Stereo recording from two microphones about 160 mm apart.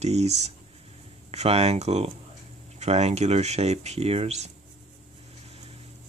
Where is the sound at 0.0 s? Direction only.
40° right (ahead or behind).